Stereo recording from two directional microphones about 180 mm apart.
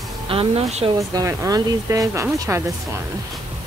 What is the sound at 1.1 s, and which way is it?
Speech, 15° right (ahead or behind).